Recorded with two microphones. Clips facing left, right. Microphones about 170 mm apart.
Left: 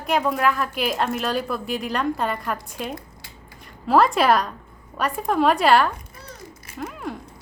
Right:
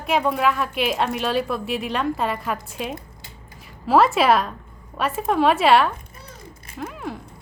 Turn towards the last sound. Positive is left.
turn(degrees=0)  # may be behind; listen again after turning